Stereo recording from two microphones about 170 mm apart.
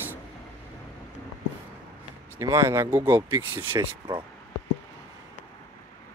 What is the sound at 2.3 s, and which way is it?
Speech, 15° right (ahead or behind).